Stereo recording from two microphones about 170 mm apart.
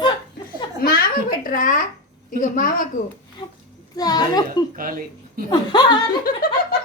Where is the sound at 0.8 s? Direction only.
60° left (ahead or behind).